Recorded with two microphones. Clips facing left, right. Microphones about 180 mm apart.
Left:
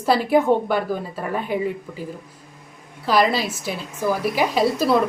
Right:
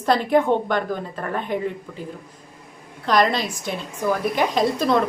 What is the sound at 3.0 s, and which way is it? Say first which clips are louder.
A woman's voice: left 1 dB; 5° left (ahead or behind).